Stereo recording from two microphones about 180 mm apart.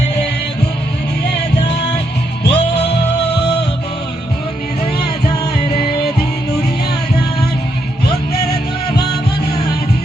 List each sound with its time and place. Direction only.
2.4 s music: 70° left (ahead or behind)